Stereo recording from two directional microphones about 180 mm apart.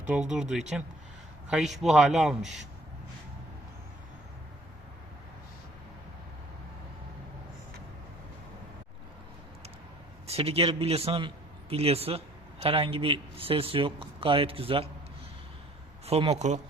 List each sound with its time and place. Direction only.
0.1 s speech: 5° right (ahead or behind)
1.5 s speech: centre (ahead or behind)
10.2 s speech: 35° right (ahead or behind)
16.0 s speech: 35° right (ahead or behind)